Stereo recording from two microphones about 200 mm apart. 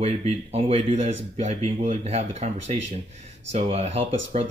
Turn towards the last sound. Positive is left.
turn(degrees=-30)  # may be behind; listen again after turning